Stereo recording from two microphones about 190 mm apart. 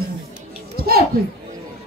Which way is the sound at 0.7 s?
50° right (ahead or behind).